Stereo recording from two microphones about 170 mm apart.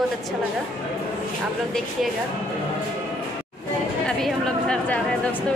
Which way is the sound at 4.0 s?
5° left (ahead or behind).